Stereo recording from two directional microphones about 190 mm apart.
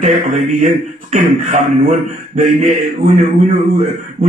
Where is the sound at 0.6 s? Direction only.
40° right (ahead or behind).